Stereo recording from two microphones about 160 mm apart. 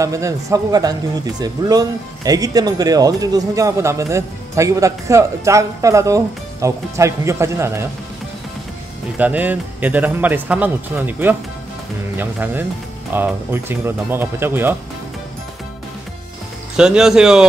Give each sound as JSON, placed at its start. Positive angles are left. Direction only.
{"t": 0.0, "sound": "speech", "side_deg": -20}
{"t": 9.2, "sound": "speech", "side_deg": -10}
{"t": 16.7, "sound": "speech", "side_deg": -5}